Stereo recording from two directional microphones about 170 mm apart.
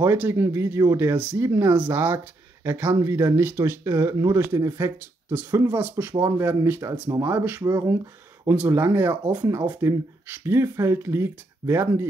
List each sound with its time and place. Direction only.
0.0 s speech: 15° right (ahead or behind)